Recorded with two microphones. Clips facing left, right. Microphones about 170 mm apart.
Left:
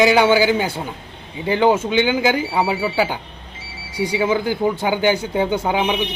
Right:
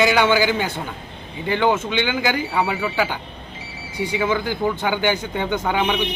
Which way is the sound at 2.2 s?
30° left (ahead or behind).